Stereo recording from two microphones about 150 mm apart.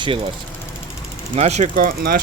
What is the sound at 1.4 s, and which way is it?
Speech, 50° right (ahead or behind).